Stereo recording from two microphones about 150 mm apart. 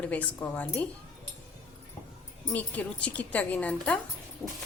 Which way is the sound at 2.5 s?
10° left (ahead or behind).